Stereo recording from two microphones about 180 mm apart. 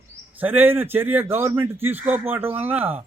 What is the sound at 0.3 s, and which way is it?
A man's voice, 10° right (ahead or behind).